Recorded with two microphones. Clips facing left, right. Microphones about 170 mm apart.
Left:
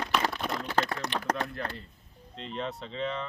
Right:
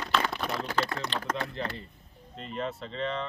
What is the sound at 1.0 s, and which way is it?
Speech, 35° left (ahead or behind).